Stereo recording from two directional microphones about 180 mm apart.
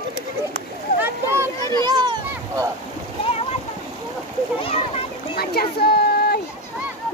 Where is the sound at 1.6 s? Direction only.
20° left (ahead or behind).